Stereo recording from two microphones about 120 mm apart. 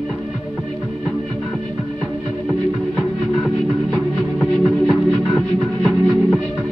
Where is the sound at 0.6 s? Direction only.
5° left (ahead or behind).